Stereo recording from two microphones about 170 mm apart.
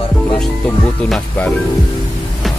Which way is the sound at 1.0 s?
5° left (ahead or behind).